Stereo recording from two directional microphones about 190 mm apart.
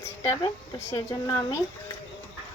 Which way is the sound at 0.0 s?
15° left (ahead or behind).